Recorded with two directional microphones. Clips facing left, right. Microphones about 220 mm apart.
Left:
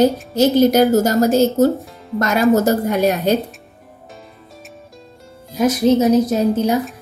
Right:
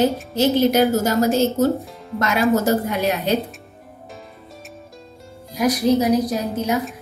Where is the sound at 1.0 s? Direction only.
45° left (ahead or behind).